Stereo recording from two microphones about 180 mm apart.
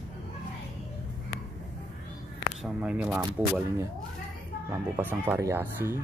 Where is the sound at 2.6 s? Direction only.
5° right (ahead or behind).